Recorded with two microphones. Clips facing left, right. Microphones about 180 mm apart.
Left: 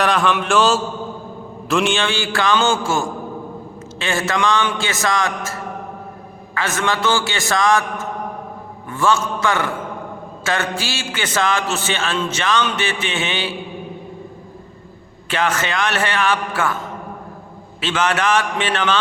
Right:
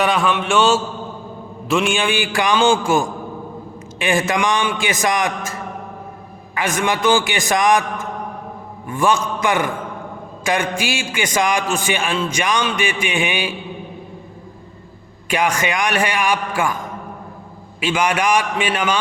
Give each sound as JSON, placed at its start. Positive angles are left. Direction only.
{"t": 0.0, "sound": "mantra", "side_deg": -5}
{"t": 1.9, "sound": "a man's voice", "side_deg": -15}
{"t": 15.3, "sound": "a man's voice", "side_deg": -15}
{"t": 17.7, "sound": "a man's voice", "side_deg": -10}